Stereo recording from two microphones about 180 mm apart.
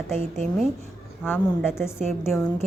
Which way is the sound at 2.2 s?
Centre (ahead or behind).